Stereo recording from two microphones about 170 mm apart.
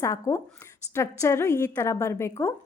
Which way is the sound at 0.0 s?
20° left (ahead or behind).